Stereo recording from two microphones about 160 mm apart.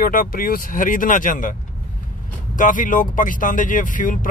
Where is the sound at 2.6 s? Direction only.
55° left (ahead or behind).